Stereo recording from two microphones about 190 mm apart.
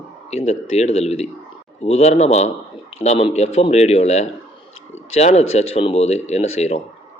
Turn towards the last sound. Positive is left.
turn(degrees=35)  # may be behind; listen again after turning